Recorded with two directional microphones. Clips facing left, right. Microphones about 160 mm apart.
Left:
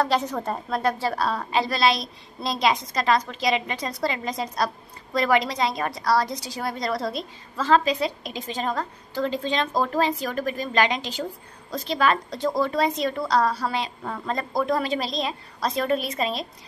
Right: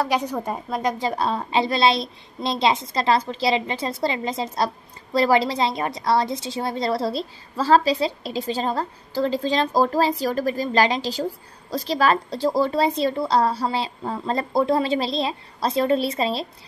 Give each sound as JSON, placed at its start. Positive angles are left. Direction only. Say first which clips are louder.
{"t": 0.0, "sound": "a woman's voice", "louder": "even", "side_deg": -10}